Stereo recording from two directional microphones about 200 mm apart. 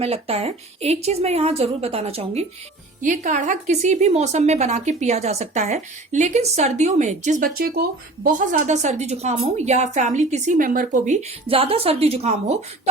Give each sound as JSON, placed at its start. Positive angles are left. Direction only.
{"t": 0.0, "sound": "speech", "side_deg": -30}
{"t": 3.0, "sound": "speech", "side_deg": -40}